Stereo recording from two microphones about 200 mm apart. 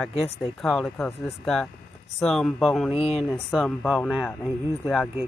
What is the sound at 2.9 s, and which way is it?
Speech, 30° left (ahead or behind).